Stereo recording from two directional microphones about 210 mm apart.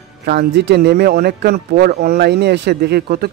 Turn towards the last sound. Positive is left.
turn(degrees=-50)  # may be behind; listen again after turning